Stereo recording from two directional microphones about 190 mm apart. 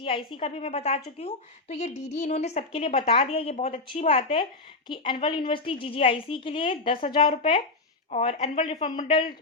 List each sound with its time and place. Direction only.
0.0 s a woman's voice: 30° left (ahead or behind)
8.1 s a woman's voice: 35° left (ahead or behind)
9.0 s a woman's voice: 25° left (ahead or behind)